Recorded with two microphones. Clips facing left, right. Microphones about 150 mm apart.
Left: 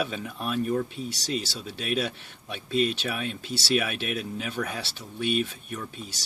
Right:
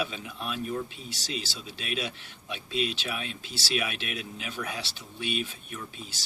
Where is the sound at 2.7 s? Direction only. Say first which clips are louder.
Left 5 dB; 50° left (ahead or behind).